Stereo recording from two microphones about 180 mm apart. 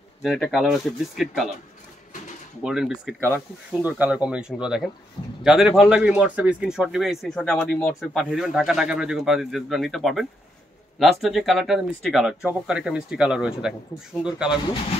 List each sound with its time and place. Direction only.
0.2 s a man's voice: centre (ahead or behind)
2.6 s a man's voice: 5° right (ahead or behind)